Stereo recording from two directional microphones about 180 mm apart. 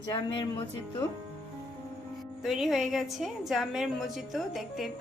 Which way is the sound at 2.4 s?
Centre (ahead or behind).